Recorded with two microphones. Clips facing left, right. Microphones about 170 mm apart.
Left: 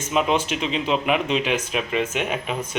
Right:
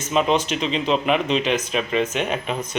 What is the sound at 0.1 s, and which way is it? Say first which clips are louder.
Speech: right 2 dB; 5° left (ahead or behind).